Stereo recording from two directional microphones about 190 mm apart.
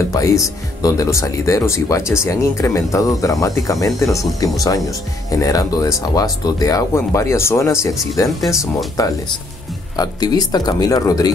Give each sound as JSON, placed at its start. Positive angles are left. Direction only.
{"t": 0.1, "sound": "speech", "side_deg": 15}